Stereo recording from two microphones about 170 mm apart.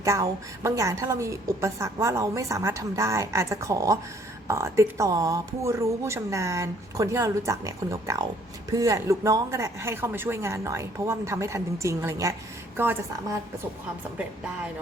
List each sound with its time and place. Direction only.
0.0 s a woman's voice: 20° right (ahead or behind)